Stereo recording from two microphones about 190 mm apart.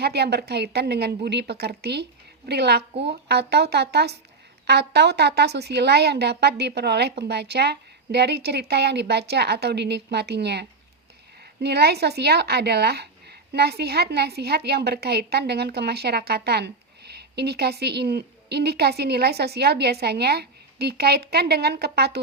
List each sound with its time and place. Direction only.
0.0 s speech: 60° right (ahead or behind)